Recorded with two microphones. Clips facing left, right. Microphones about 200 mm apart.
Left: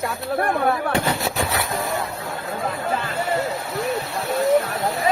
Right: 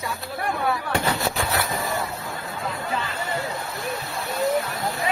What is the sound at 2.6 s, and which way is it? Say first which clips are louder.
Speech: left 4 dB; 50° left (ahead or behind).